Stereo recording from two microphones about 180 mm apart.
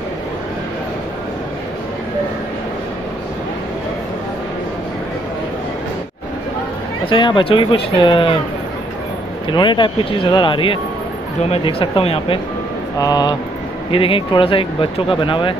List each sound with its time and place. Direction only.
7.1 s speech: 25° left (ahead or behind)
9.5 s speech: 25° left (ahead or behind)
13.0 s speech: 20° left (ahead or behind)